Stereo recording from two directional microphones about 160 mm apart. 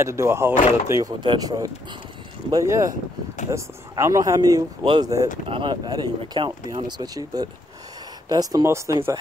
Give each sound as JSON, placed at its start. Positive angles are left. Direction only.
{"t": 0.0, "sound": "speech", "side_deg": -15}